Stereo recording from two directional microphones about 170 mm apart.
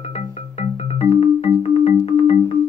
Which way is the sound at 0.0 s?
40° left (ahead or behind).